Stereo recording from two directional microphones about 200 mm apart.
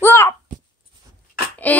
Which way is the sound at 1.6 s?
10° left (ahead or behind).